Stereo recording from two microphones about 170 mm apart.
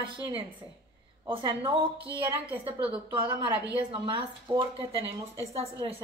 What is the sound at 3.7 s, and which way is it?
A woman's voice, 30° right (ahead or behind).